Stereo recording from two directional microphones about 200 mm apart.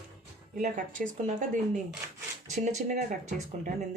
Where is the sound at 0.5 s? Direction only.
40° right (ahead or behind).